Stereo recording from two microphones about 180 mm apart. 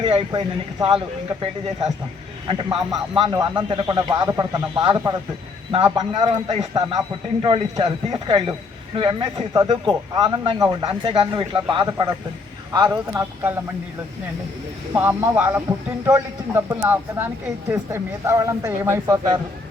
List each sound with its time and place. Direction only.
0.0 s a man's voice: 30° right (ahead or behind); by 13.6 s 15° right (ahead or behind)
14.9 s speech: 10° right (ahead or behind)